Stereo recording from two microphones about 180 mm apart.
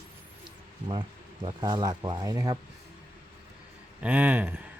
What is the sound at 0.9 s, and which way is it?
Speech, 25° right (ahead or behind).